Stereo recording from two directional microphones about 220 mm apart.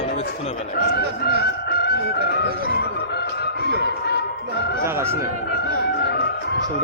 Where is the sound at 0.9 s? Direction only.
45° left (ahead or behind).